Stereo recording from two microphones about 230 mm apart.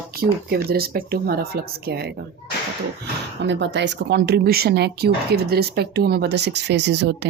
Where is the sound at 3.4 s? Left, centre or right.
Right.